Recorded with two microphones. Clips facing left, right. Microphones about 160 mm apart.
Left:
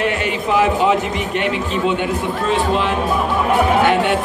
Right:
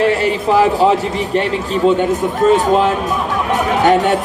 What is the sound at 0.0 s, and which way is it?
A man's voice, 35° right (ahead or behind).